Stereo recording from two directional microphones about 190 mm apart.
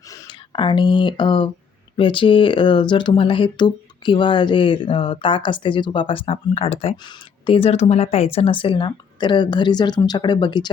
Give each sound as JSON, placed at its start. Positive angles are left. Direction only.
{"t": 0.1, "sound": "speech", "side_deg": 20}